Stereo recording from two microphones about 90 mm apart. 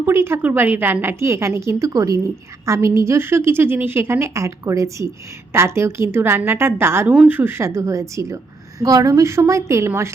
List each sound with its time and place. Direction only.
0.0 s a woman's voice: 30° right (ahead or behind)